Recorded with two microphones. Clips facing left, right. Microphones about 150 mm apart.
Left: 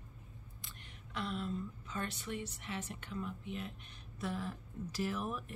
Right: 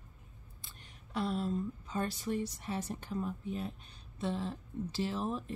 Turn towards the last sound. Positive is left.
turn(degrees=-25)  # may be behind; listen again after turning